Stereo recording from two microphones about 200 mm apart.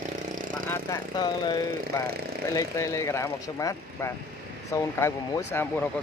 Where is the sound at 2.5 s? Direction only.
15° left (ahead or behind).